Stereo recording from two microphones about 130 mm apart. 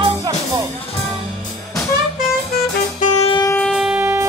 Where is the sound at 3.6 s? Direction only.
5° right (ahead or behind).